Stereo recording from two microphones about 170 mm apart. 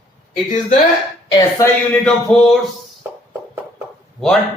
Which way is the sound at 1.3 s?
25° left (ahead or behind).